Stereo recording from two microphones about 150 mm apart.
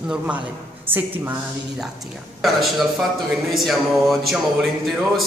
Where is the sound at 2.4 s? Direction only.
Centre (ahead or behind).